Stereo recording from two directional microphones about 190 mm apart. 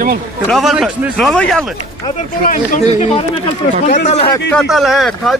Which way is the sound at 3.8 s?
35° left (ahead or behind).